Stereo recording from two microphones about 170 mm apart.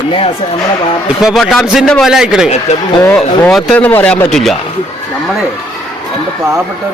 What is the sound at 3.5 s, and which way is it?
A man's voice, centre (ahead or behind).